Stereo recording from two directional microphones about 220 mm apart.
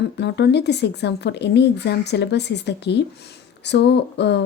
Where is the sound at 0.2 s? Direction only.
50° left (ahead or behind).